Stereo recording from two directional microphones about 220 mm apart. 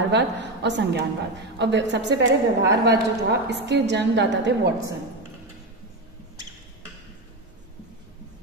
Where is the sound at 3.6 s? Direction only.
50° right (ahead or behind).